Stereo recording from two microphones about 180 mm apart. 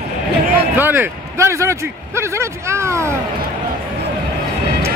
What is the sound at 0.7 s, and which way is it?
Speech, 10° right (ahead or behind).